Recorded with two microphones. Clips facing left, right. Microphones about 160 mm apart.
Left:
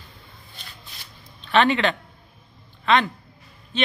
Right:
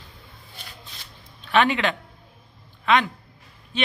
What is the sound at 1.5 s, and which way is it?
A man's voice, 10° right (ahead or behind).